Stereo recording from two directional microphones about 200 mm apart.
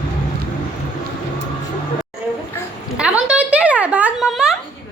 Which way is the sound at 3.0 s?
5° right (ahead or behind).